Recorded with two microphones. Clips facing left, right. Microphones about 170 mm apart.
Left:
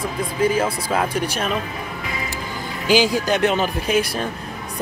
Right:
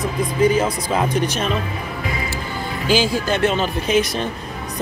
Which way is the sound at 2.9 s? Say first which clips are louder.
Left 1 dB; 15° left (ahead or behind).